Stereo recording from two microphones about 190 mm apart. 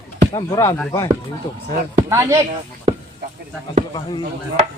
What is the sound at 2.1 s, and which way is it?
Speech, 15° right (ahead or behind).